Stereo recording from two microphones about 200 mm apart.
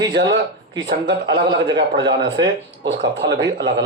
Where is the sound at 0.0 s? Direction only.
60° right (ahead or behind).